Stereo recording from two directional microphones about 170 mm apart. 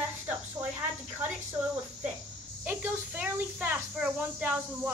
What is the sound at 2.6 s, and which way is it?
Speech, 10° right (ahead or behind).